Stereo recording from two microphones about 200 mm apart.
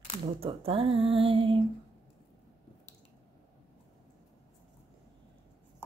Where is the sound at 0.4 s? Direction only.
25° right (ahead or behind).